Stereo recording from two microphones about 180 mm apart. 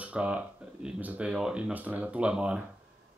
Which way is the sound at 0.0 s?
5° right (ahead or behind).